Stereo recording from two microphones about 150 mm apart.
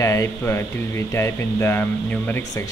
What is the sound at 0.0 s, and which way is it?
Speech, 20° left (ahead or behind).